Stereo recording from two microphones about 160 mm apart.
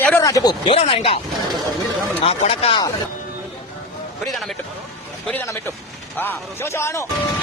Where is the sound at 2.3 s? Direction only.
35° left (ahead or behind).